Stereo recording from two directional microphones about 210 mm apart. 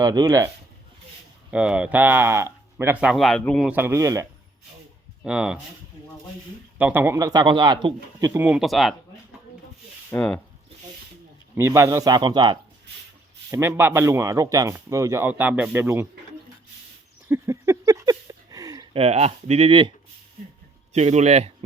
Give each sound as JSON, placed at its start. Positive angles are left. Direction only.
{"t": 0.0, "sound": "speech", "side_deg": -20}
{"t": 1.5, "sound": "speech", "side_deg": -5}
{"t": 3.8, "sound": "speech", "side_deg": -15}
{"t": 5.2, "sound": "speech", "side_deg": -5}
{"t": 6.7, "sound": "speech", "side_deg": -10}
{"t": 8.3, "sound": "speech", "side_deg": -5}
{"t": 10.1, "sound": "speech", "side_deg": 5}
{"t": 11.5, "sound": "speech", "side_deg": -15}
{"t": 17.2, "sound": "a sound", "side_deg": -10}
{"t": 18.9, "sound": "speech", "side_deg": -30}
{"t": 20.9, "sound": "speech", "side_deg": -30}